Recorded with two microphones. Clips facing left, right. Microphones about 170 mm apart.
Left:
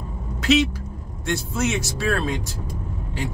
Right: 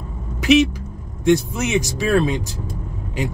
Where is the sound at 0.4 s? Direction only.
15° right (ahead or behind).